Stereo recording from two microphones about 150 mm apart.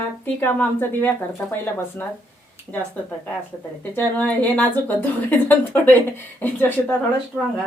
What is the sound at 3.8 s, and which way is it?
Speech, 10° left (ahead or behind).